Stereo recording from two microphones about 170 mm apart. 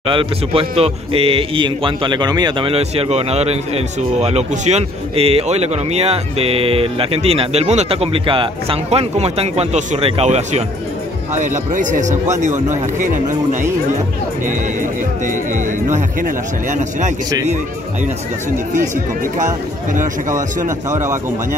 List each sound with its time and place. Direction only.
0.0 s a man's voice: 30° right (ahead or behind); by 13.7 s 45° right (ahead or behind)
15.5 s speech: 50° right (ahead or behind)
19.9 s speech: 50° right (ahead or behind)
20.9 s a man's voice: 15° right (ahead or behind)